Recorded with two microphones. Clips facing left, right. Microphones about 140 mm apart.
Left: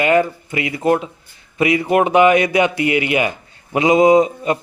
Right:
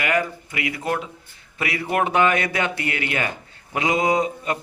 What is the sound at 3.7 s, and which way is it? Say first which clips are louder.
Mantra: left 9 dB; 20° left (ahead or behind).